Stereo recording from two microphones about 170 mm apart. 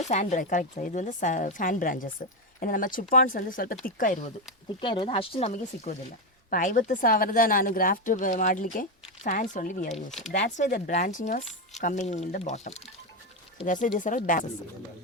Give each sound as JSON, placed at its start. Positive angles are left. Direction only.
{"t": 0.0, "sound": "speech", "side_deg": 45}
{"t": 4.8, "sound": "speech", "side_deg": 30}
{"t": 6.5, "sound": "speech", "side_deg": 55}
{"t": 9.9, "sound": "speech", "side_deg": 0}
{"t": 10.2, "sound": "speech", "side_deg": 45}